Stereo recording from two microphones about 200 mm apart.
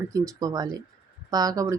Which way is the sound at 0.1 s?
20° right (ahead or behind).